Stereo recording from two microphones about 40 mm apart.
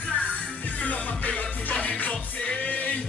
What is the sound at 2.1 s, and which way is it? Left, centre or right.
Music, left.